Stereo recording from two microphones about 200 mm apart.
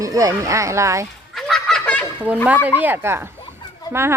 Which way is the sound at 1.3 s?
Centre (ahead or behind).